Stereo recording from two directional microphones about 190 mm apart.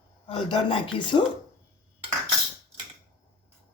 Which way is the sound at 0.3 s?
25° left (ahead or behind).